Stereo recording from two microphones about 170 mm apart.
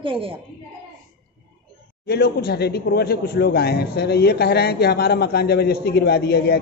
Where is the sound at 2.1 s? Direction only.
70° left (ahead or behind).